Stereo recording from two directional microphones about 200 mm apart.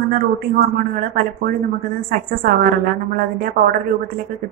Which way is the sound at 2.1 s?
45° right (ahead or behind).